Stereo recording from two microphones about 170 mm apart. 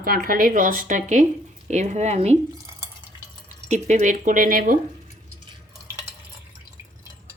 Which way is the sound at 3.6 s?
45° right (ahead or behind).